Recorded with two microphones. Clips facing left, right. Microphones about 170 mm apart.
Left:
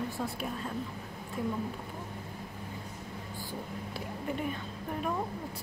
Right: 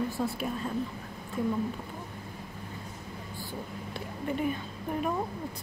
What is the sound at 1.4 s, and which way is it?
Speech, 5° left (ahead or behind).